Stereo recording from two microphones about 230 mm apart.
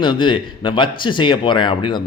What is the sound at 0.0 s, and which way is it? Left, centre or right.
Speech, left.